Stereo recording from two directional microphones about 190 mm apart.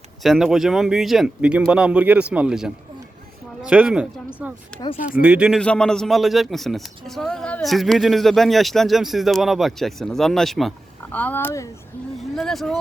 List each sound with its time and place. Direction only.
0.2 s a man's voice: centre (ahead or behind)
12.4 s a man's voice: centre (ahead or behind)